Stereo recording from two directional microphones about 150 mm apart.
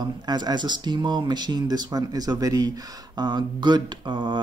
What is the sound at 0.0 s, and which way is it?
Speech, 30° right (ahead or behind).